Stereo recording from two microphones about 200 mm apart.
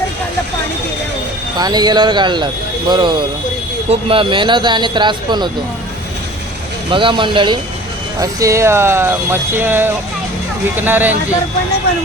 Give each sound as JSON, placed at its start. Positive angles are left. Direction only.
{"t": 1.5, "sound": "speech", "side_deg": -20}
{"t": 6.9, "sound": "speech", "side_deg": -25}